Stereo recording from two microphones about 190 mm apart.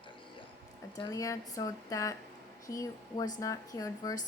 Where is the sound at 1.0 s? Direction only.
15° left (ahead or behind).